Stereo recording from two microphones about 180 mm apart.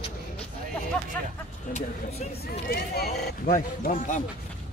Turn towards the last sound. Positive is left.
turn(degrees=45)  # may be behind; listen again after turning